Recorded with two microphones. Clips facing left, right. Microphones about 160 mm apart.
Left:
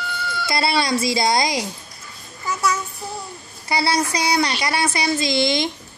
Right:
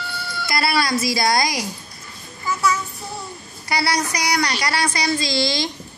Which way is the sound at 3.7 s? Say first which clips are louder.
Left 1 dB; 25° left (ahead or behind).